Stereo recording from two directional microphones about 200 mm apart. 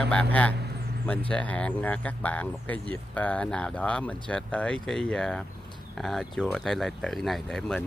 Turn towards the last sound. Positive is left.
turn(degrees=0)  # may be behind; listen again after turning